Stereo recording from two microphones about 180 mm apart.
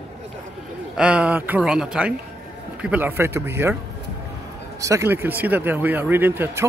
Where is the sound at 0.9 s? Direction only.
5° right (ahead or behind).